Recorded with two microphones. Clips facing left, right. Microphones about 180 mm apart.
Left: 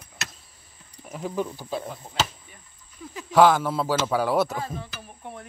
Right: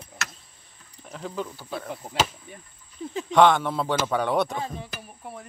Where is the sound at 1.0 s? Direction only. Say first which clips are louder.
Left 4 dB; 10° left (ahead or behind).